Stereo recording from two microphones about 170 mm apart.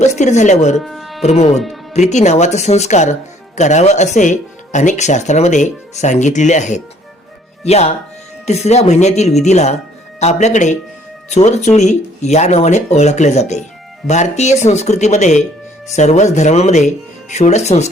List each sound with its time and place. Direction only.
0.0 s speech: 45° left (ahead or behind)
0.9 s music: centre (ahead or behind)
1.2 s speech: 40° left (ahead or behind)
1.5 s speech: centre (ahead or behind)
1.9 s speech: 40° left (ahead or behind)